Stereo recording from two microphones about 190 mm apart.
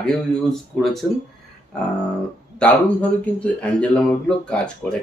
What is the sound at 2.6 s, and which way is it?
Speech, 5° left (ahead or behind).